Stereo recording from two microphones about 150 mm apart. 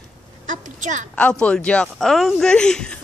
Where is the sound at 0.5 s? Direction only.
55° right (ahead or behind).